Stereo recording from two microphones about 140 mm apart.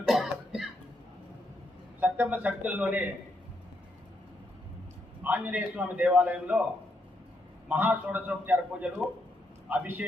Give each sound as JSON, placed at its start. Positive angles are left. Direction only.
{"t": 0.1, "sound": "cough", "side_deg": 0}
{"t": 2.0, "sound": "speech", "side_deg": -10}
{"t": 5.2, "sound": "a man's voice", "side_deg": -10}
{"t": 7.7, "sound": "a man's voice", "side_deg": -10}